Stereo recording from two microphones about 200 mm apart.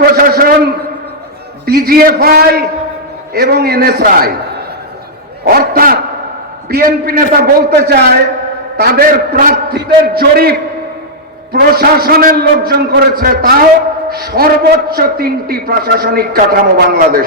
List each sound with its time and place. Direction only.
0.0 s a sound: 45° right (ahead or behind)
1.6 s a man's voice: 50° right (ahead or behind)
11.5 s a man's voice: 50° right (ahead or behind)